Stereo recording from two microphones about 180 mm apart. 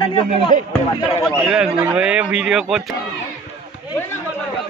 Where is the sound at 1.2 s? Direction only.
5° right (ahead or behind).